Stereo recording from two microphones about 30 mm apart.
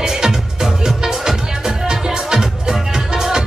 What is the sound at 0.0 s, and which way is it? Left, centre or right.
Music, centre.